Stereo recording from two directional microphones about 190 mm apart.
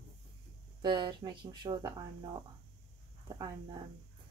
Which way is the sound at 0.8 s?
25° right (ahead or behind).